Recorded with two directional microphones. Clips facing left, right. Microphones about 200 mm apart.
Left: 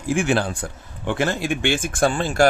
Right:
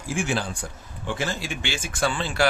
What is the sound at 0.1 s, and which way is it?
Speech, 60° left (ahead or behind).